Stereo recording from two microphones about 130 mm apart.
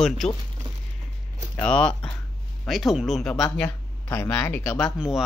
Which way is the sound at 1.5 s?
5° left (ahead or behind).